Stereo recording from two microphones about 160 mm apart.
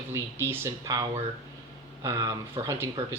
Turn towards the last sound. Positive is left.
turn(degrees=-20)  # may be behind; listen again after turning